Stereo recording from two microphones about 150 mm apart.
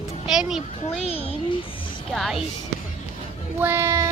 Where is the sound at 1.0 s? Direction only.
40° left (ahead or behind).